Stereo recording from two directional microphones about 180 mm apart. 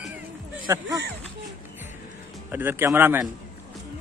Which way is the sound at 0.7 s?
20° right (ahead or behind).